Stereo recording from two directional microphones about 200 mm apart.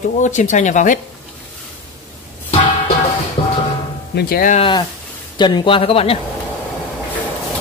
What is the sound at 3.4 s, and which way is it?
Music, 30° left (ahead or behind).